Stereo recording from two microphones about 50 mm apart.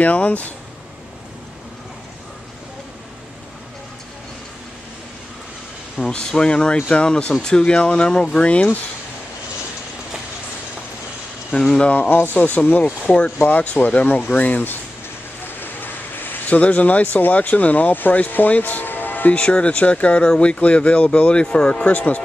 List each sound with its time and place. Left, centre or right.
0.0 s speech: left
5.9 s speech: centre
11.5 s speech: centre
12.1 s speech: left
12.4 s speech: left
13.4 s speech: left
19.3 s speech: left